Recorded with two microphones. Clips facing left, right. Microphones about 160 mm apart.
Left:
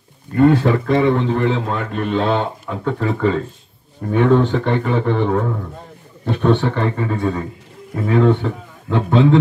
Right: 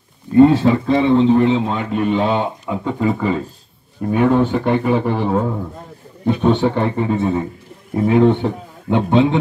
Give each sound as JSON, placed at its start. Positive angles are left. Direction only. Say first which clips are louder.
{"t": 0.4, "sound": "a man's voice", "louder": "right 3 dB", "side_deg": -25}
{"t": 6.4, "sound": "a man's voice", "louder": "even", "side_deg": -15}